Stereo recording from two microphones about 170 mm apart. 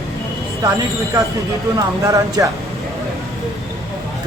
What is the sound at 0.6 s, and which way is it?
Speech, 20° right (ahead or behind).